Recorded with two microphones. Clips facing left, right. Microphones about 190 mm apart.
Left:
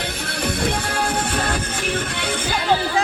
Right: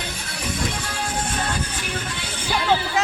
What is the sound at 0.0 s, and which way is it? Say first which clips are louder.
Music: left 6 dB; 60° left (ahead or behind).